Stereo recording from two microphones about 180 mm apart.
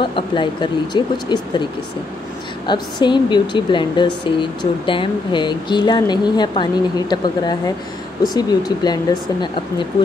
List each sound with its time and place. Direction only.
0.0 s speech: 25° left (ahead or behind)
2.6 s speech: 25° left (ahead or behind)